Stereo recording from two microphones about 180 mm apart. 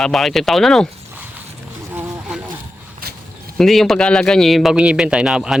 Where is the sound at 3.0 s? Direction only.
55° right (ahead or behind).